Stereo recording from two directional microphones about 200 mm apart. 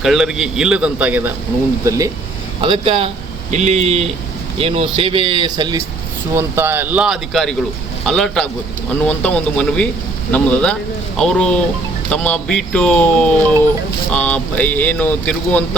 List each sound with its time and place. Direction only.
0.0 s a man's voice: centre (ahead or behind); by 5.8 s 20° right (ahead or behind)
6.3 s a man's voice: 10° right (ahead or behind); by 15.6 s 5° left (ahead or behind)